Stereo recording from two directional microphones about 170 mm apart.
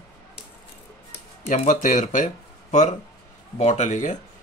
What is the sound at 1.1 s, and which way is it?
Speech, 40° left (ahead or behind).